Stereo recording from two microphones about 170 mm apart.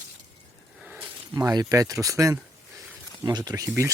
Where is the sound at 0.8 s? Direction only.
10° right (ahead or behind).